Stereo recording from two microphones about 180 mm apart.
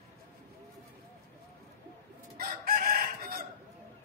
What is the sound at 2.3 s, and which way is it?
Chicken, 55° right (ahead or behind).